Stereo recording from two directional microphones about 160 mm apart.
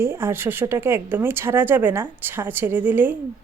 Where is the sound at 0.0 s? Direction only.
15° right (ahead or behind).